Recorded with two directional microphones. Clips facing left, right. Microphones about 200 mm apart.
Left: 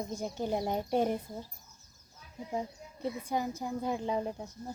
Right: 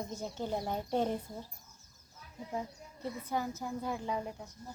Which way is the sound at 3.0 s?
15° left (ahead or behind).